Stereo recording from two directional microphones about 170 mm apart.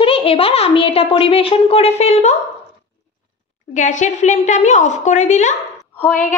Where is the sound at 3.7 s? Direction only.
45° left (ahead or behind).